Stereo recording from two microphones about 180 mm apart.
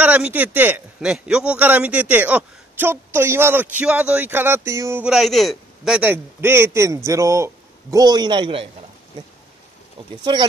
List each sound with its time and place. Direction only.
0.0 s a man's voice: 10° right (ahead or behind); by 8.6 s 30° right (ahead or behind)
10.3 s speech: 25° right (ahead or behind)